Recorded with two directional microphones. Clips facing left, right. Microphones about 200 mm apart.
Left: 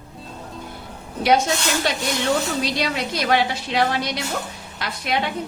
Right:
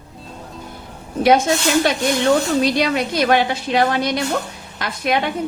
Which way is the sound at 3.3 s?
50° right (ahead or behind).